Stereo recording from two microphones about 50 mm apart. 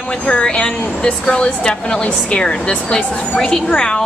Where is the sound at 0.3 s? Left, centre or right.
Centre.